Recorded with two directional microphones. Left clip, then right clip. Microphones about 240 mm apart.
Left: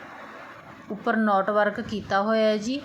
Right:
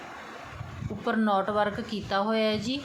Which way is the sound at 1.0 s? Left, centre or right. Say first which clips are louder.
Left 4 dB; centre.